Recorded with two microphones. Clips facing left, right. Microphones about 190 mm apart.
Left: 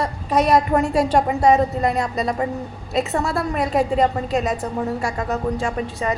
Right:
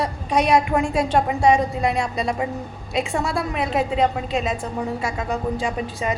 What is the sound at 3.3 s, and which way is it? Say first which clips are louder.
Speech: left 4 dB; 5° right (ahead or behind).